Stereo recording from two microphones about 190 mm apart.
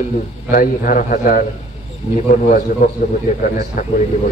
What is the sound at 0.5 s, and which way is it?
Speech, 45° left (ahead or behind).